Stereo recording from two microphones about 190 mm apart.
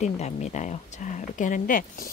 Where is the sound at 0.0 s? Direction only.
40° left (ahead or behind).